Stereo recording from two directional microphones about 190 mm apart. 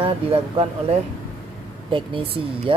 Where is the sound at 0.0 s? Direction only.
30° right (ahead or behind).